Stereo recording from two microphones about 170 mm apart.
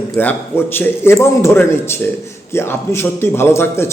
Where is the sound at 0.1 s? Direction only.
10° left (ahead or behind).